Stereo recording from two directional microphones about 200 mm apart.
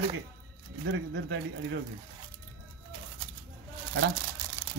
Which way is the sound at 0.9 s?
65° right (ahead or behind).